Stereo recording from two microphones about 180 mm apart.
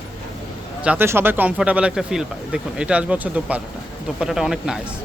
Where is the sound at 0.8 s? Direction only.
10° right (ahead or behind).